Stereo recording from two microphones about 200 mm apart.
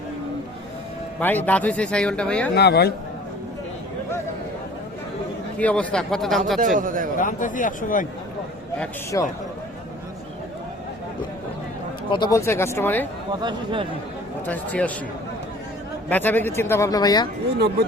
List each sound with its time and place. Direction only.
1.2 s speech: 10° left (ahead or behind)
2.6 s speech: 55° left (ahead or behind)
5.5 s speech: 5° left (ahead or behind)
6.7 s a man's voice: 45° right (ahead or behind)
7.2 s speech: 40° left (ahead or behind)
9.1 s speech: 15° left (ahead or behind)
12.1 s speech: 20° left (ahead or behind)
13.4 s speech: 25° right (ahead or behind)
14.4 s speech: 5° left (ahead or behind)
16.0 s speech: 10° left (ahead or behind)